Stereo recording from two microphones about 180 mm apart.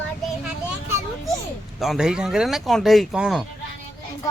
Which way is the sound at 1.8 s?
Centre (ahead or behind).